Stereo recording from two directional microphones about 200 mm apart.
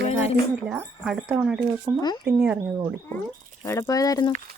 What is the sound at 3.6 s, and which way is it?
Speech, 15° left (ahead or behind).